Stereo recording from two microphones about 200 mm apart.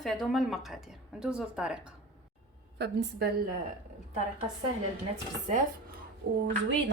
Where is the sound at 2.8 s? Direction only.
55° right (ahead or behind).